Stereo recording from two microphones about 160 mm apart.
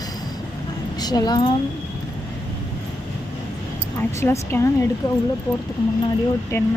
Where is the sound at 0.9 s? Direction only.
25° left (ahead or behind).